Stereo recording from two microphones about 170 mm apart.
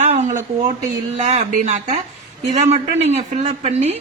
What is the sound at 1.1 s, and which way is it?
A woman's voice, 40° right (ahead or behind).